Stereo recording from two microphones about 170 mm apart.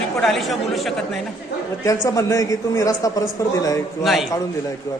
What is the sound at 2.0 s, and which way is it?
A man's voice, 20° left (ahead or behind).